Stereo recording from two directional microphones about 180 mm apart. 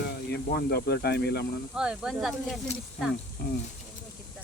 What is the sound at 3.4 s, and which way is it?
Speech, 55° left (ahead or behind).